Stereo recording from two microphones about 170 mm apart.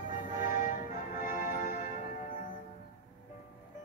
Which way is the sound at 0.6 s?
50° left (ahead or behind).